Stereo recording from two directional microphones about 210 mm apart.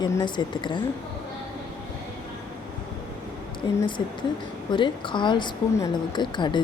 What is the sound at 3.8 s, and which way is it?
A woman's voice, 20° left (ahead or behind).